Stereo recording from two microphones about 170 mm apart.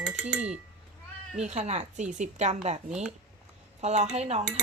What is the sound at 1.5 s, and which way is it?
Speech, 40° right (ahead or behind).